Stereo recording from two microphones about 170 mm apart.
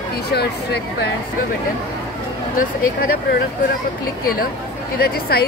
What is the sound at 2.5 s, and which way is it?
Speech, 60° left (ahead or behind).